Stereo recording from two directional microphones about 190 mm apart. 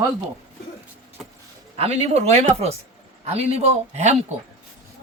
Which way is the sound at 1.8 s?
35° right (ahead or behind).